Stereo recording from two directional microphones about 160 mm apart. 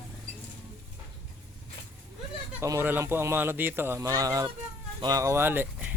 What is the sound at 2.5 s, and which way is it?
Speech, 15° right (ahead or behind).